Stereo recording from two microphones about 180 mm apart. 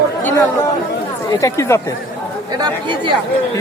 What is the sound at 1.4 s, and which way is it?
Speech, 15° left (ahead or behind).